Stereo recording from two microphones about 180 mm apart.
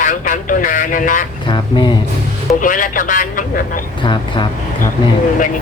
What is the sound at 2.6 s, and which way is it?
Speech, 45° left (ahead or behind).